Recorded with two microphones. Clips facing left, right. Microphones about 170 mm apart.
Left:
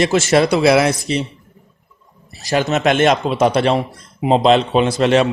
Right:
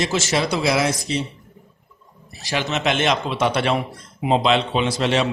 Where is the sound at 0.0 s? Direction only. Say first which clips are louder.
Left 8 dB; 55° left (ahead or behind).